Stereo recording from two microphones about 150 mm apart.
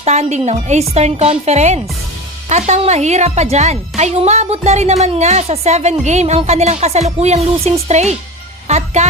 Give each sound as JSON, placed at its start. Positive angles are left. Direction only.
{"t": 0.0, "sound": "speech", "side_deg": -45}